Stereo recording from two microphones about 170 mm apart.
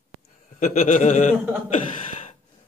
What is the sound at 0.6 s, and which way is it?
Speech, 50° left (ahead or behind).